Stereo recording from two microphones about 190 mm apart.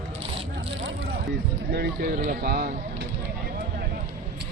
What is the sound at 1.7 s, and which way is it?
Speech, 55° right (ahead or behind).